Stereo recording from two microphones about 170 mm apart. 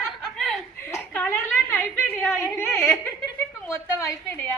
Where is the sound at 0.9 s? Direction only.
10° left (ahead or behind).